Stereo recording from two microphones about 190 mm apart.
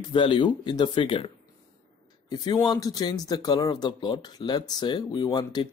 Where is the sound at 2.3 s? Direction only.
20° left (ahead or behind).